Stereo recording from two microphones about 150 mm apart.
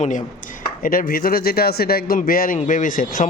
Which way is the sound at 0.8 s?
70° left (ahead or behind).